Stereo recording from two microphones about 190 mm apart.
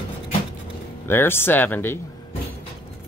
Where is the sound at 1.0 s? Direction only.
10° left (ahead or behind).